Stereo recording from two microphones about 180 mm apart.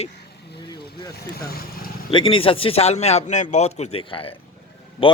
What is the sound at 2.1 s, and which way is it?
A man's voice, 30° left (ahead or behind).